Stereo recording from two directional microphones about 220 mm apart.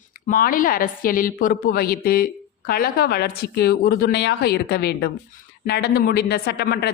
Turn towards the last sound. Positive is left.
turn(degrees=45)  # may be behind; listen again after turning